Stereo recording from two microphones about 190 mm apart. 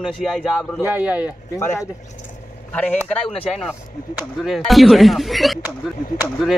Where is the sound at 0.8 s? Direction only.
10° right (ahead or behind).